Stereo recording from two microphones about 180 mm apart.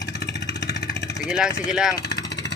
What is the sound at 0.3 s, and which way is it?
Vehicle, 75° left (ahead or behind).